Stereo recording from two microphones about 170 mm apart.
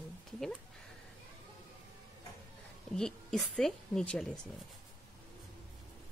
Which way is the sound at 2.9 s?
5° left (ahead or behind).